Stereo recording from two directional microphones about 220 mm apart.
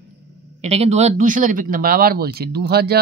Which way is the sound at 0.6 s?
30° right (ahead or behind).